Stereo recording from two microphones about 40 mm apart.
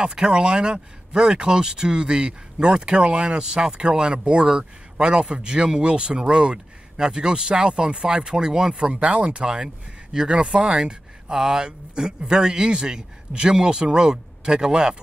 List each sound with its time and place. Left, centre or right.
0.0 s speech: centre